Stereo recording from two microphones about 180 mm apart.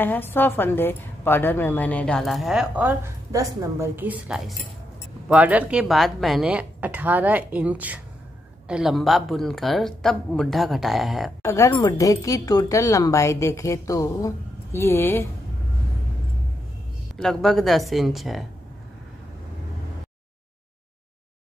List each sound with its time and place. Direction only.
0.0 s a woman's voice: 10° left (ahead or behind)
11.4 s a woman's voice: 15° left (ahead or behind)
17.2 s a woman's voice: 5° left (ahead or behind)